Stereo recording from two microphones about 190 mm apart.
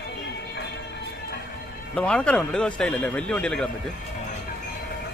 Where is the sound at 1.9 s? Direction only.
5° left (ahead or behind).